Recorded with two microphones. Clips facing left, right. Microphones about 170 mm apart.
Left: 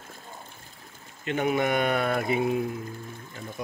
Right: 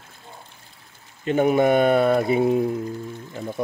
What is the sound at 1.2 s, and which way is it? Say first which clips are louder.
Speech: right 7 dB; 40° right (ahead or behind).